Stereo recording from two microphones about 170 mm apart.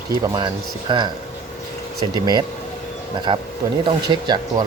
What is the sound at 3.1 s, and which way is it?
Speech, 25° right (ahead or behind).